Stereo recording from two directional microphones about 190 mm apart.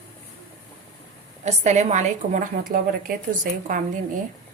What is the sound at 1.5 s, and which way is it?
A woman's voice, 40° right (ahead or behind).